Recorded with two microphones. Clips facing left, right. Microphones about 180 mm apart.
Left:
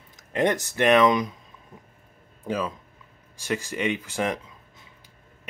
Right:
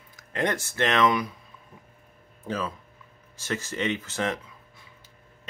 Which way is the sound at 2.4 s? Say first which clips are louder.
Left 3 dB; 15° left (ahead or behind).